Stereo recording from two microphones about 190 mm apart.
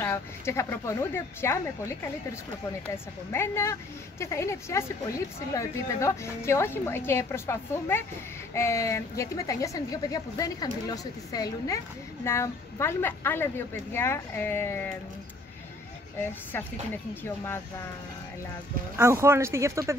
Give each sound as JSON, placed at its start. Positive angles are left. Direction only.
{"t": 0.0, "sound": "a woman's voice", "side_deg": 15}
{"t": 16.2, "sound": "a woman's voice", "side_deg": 10}
{"t": 18.9, "sound": "speech", "side_deg": -15}